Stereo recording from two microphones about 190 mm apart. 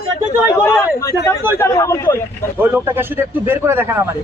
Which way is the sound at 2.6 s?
10° right (ahead or behind).